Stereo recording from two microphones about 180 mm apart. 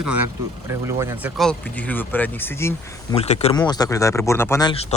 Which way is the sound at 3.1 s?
35° left (ahead or behind).